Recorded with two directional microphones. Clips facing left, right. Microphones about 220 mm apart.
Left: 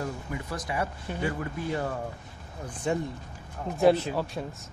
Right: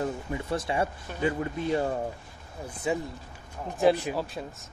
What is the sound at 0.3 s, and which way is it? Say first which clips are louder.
Speech: right 4 dB; 25° right (ahead or behind).